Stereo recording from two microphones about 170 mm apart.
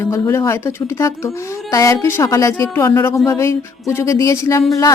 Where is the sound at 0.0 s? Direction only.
15° left (ahead or behind).